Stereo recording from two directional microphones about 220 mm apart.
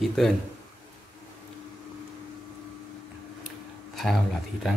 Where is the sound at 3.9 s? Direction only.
Centre (ahead or behind).